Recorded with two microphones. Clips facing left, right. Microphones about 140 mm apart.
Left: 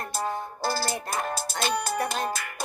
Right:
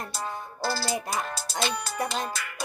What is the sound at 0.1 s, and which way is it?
Music, 45° left (ahead or behind).